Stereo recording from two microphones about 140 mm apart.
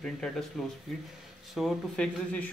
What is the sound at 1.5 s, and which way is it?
Speech, centre (ahead or behind).